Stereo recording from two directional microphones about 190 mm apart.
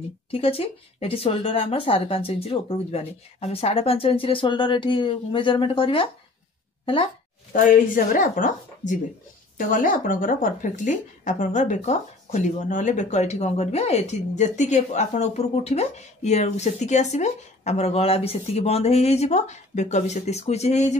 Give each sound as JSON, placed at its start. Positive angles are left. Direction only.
{"t": 0.3, "sound": "speech", "side_deg": 30}
{"t": 7.5, "sound": "speech", "side_deg": 45}